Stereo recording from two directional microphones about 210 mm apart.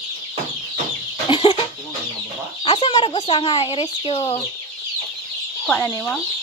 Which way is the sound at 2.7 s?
25° left (ahead or behind).